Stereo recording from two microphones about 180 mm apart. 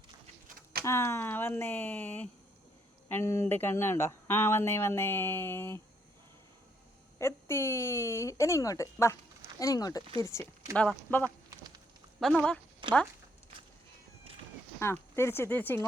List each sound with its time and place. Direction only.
0.4 s a sound: 55° right (ahead or behind)
0.9 s speech: 15° left (ahead or behind)
7.2 s speech: 15° left (ahead or behind)
12.8 s speech: 25° right (ahead or behind)
14.8 s speech: 15° left (ahead or behind)